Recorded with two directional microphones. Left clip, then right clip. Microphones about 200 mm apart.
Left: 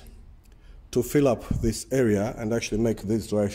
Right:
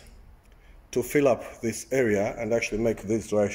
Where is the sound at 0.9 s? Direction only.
40° left (ahead or behind).